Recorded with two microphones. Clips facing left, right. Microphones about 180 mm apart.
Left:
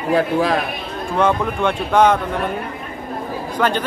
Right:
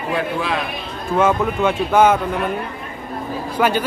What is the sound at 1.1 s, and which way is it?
Speech, 5° right (ahead or behind).